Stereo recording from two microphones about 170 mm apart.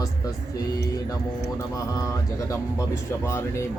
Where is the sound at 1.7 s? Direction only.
20° left (ahead or behind).